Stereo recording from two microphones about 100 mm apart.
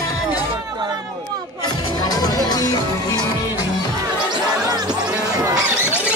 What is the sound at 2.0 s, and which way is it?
Music, 40° left (ahead or behind).